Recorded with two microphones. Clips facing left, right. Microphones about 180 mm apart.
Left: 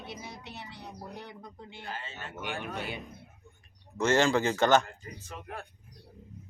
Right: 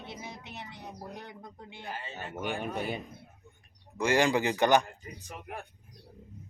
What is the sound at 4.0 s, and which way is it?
A woman's voice, 15° right (ahead or behind).